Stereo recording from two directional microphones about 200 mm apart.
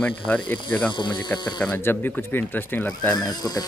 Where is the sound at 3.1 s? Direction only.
20° left (ahead or behind).